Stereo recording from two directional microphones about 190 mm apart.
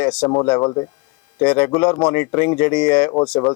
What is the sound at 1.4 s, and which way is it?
Speech, 10° left (ahead or behind).